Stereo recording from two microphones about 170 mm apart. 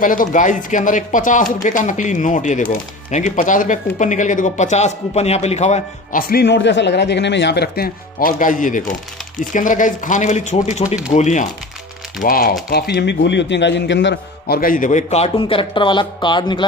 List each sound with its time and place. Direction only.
0.0 s speech: 50° left (ahead or behind)
6.1 s a man's voice: 65° left (ahead or behind); by 11.4 s 45° left (ahead or behind)
12.2 s a man's voice: 55° left (ahead or behind)
12.6 s a man's voice: 65° left (ahead or behind); by 16.6 s 25° left (ahead or behind)